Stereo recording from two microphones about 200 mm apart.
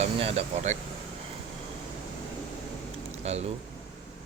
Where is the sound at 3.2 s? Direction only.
30° right (ahead or behind).